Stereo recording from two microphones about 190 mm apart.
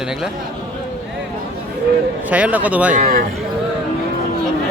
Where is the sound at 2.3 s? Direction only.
10° right (ahead or behind).